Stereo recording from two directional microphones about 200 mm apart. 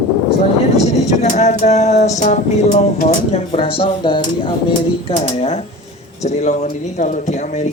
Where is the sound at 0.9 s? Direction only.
35° left (ahead or behind).